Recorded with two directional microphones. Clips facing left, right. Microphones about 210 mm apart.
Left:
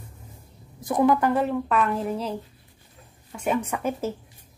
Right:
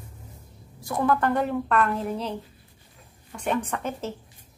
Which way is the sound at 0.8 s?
15° left (ahead or behind).